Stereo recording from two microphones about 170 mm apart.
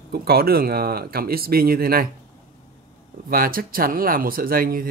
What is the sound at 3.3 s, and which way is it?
A man's voice, 60° right (ahead or behind).